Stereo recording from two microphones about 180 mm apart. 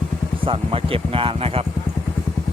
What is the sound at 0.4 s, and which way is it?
Speech, 30° right (ahead or behind).